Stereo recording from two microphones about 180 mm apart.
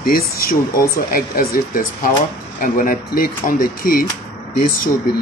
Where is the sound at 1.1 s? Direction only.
55° left (ahead or behind).